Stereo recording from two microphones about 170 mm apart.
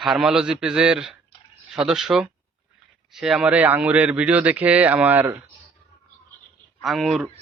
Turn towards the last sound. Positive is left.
turn(degrees=0)  # may be behind; listen again after turning